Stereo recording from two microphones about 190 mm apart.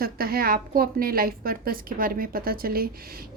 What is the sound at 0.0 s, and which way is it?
A woman's voice, 50° right (ahead or behind).